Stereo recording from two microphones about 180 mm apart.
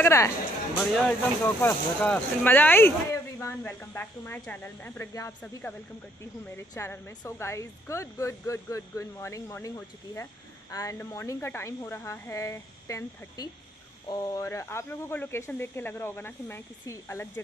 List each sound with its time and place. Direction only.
0.0 s speech: 15° left (ahead or behind)